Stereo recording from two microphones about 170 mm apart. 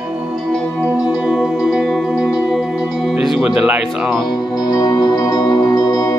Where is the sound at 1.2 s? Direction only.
5° right (ahead or behind).